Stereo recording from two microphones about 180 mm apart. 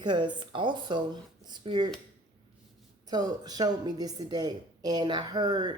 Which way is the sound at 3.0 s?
20° right (ahead or behind).